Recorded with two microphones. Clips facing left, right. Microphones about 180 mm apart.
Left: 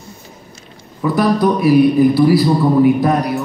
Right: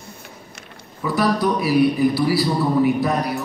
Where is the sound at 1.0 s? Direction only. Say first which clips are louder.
Left 5 dB; 50° left (ahead or behind).